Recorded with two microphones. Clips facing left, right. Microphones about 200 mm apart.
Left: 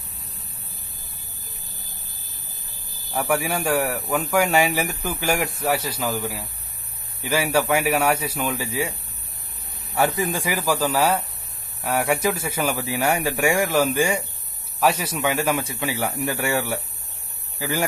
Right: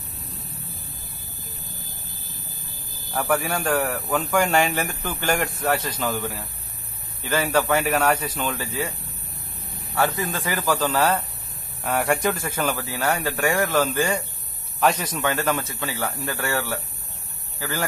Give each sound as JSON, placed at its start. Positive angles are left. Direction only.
{"t": 3.1, "sound": "speech", "side_deg": 10}
{"t": 9.9, "sound": "speech", "side_deg": 15}